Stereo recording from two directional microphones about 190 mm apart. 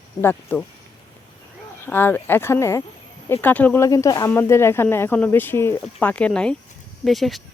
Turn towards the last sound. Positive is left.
turn(degrees=0)  # may be behind; listen again after turning